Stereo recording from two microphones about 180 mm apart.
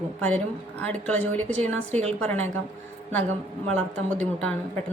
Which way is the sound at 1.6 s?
40° right (ahead or behind).